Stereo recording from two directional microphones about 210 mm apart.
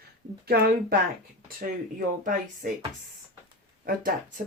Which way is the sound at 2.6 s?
45° right (ahead or behind).